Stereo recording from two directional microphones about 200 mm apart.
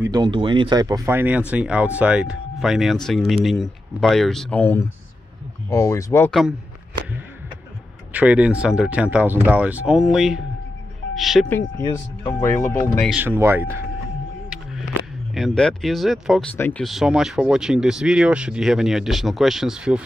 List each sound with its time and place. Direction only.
0.0 s speech: 20° right (ahead or behind); by 3.0 s centre (ahead or behind)
4.1 s speech: centre (ahead or behind)
8.1 s speech: 5° right (ahead or behind)
12.3 s speech: 10° left (ahead or behind)
13.1 s speech: 10° right (ahead or behind)
15.3 s speech: centre (ahead or behind)